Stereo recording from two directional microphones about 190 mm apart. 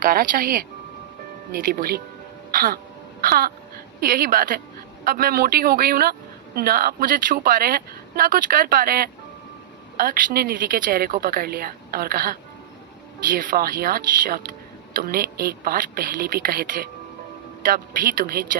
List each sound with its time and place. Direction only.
0.0 s speech: 45° right (ahead or behind)
1.6 s speech: 50° right (ahead or behind)
3.2 s a sound: 50° right (ahead or behind)
4.0 s speech: 45° right (ahead or behind)